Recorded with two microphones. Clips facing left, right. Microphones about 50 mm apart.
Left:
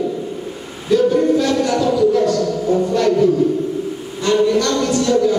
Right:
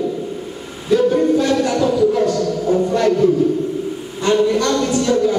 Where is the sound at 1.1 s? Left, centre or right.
Centre.